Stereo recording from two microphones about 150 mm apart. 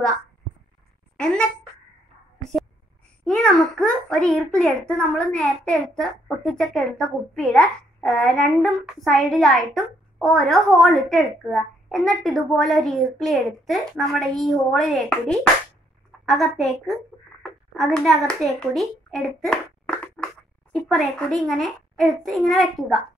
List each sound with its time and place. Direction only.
1.1 s speech: 5° left (ahead or behind)
3.3 s a child's voice: 5° left (ahead or behind)